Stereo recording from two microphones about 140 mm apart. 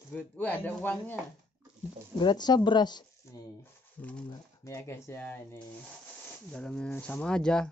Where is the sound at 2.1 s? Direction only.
30° left (ahead or behind).